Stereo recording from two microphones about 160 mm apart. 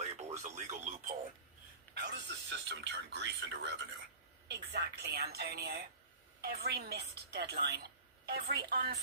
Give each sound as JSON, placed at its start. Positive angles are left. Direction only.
{"t": 0.2, "sound": "speech", "side_deg": -45}
{"t": 2.0, "sound": "a woman's voice", "side_deg": -90}